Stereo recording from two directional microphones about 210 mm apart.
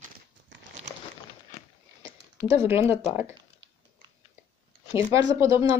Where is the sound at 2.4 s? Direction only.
25° left (ahead or behind).